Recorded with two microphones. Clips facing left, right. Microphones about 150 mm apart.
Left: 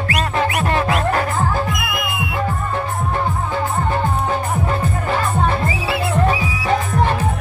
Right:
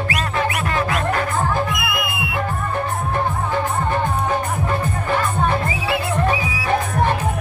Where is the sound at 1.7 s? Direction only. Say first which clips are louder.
Even; 45° left (ahead or behind).